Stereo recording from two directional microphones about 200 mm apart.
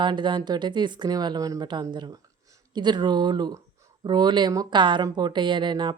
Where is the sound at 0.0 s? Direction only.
25° right (ahead or behind).